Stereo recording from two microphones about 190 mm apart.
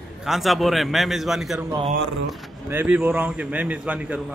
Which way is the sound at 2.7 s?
10° right (ahead or behind).